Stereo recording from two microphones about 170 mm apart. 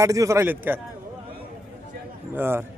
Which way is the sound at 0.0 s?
20° right (ahead or behind).